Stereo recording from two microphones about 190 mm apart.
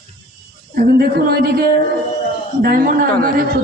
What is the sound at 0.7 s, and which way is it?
Speech, 55° right (ahead or behind).